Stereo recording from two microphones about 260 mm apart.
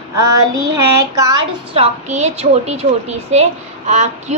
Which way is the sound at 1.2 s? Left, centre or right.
Centre.